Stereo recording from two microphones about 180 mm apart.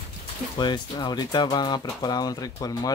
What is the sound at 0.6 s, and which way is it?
Speech, 25° left (ahead or behind).